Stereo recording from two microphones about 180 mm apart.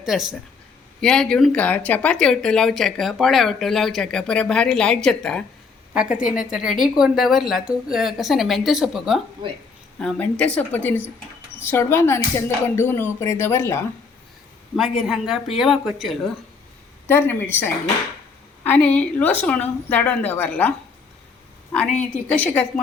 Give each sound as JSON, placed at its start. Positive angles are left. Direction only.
{"t": 0.0, "sound": "a woman's voice", "side_deg": -5}
{"t": 14.8, "sound": "speech", "side_deg": 0}
{"t": 17.1, "sound": "speech", "side_deg": 10}